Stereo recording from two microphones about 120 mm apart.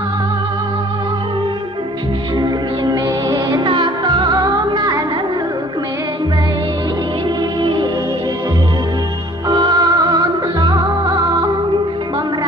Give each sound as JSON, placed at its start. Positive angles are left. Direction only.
{"t": 2.3, "sound": "music", "side_deg": -35}
{"t": 9.5, "sound": "music", "side_deg": -35}